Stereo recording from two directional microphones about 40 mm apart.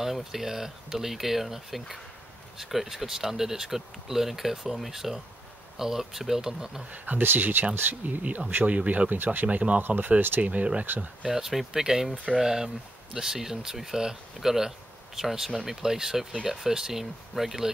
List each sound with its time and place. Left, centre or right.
0.0 s speech: centre
6.9 s speech: right
7.9 s speech: right
9.2 s speech: right
9.5 s speech: right
9.8 s speech: right
10.4 s speech: right
11.2 s speech: centre